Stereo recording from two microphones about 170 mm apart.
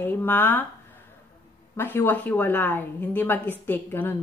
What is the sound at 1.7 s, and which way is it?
A woman's voice, 10° left (ahead or behind).